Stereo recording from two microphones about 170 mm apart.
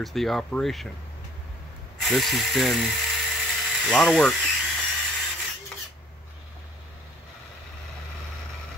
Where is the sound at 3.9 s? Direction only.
5° left (ahead or behind).